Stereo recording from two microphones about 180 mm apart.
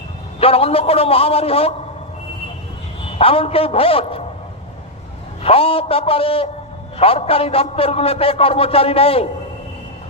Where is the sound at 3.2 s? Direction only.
30° left (ahead or behind).